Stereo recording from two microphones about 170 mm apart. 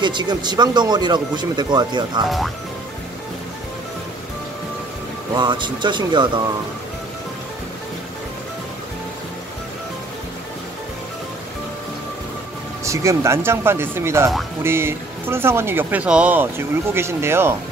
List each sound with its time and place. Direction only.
0.0 s speech: 25° right (ahead or behind)
2.2 s speech: centre (ahead or behind)
5.3 s speech: 25° right (ahead or behind)
12.8 s speech: 15° right (ahead or behind)